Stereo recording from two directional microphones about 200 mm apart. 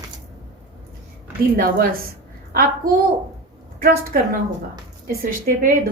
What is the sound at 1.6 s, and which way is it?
Speech, 45° right (ahead or behind).